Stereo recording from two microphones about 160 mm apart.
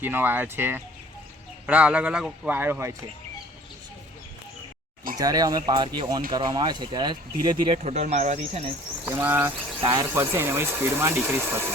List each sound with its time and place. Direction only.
0.0 s speech: 10° right (ahead or behind)
2.6 s speech: 15° right (ahead or behind)
5.1 s speech: 25° right (ahead or behind)
7.8 s speech: 45° right (ahead or behind)
9.0 s speech: 15° right (ahead or behind)
9.8 s speech: 25° right (ahead or behind)